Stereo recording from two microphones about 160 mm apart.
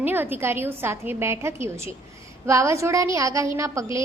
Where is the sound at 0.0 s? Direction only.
10° right (ahead or behind).